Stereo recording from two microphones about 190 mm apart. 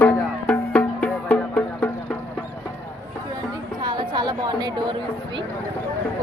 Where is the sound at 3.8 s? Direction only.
25° right (ahead or behind).